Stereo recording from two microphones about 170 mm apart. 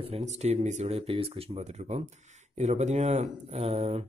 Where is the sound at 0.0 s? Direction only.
40° right (ahead or behind).